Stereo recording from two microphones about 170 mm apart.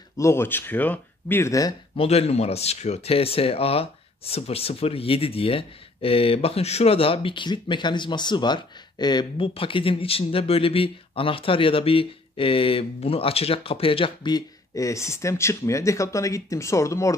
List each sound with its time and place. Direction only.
0.2 s speech: 15° left (ahead or behind)
2.0 s speech: 35° left (ahead or behind); by 17.1 s 20° left (ahead or behind)